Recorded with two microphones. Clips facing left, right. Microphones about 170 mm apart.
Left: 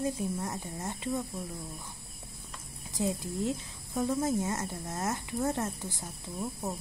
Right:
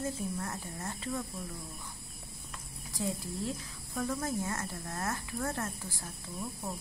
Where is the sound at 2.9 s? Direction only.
20° left (ahead or behind).